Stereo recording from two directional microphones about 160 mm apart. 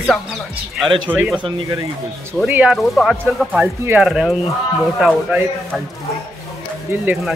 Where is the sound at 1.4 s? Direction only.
25° right (ahead or behind).